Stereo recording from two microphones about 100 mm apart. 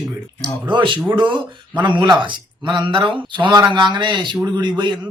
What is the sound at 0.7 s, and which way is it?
Speech, 55° right (ahead or behind).